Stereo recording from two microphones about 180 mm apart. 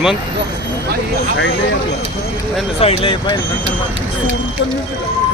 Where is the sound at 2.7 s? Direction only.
35° left (ahead or behind).